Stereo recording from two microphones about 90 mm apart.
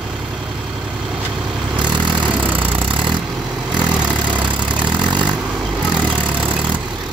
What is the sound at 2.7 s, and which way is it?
Vehicle, 65° right (ahead or behind).